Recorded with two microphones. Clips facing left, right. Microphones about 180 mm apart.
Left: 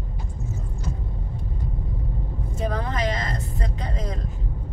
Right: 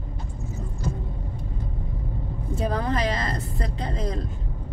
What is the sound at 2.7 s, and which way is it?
Vehicle, 35° right (ahead or behind).